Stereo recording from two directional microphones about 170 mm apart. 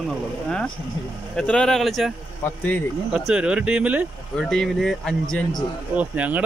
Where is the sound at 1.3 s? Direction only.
5° left (ahead or behind).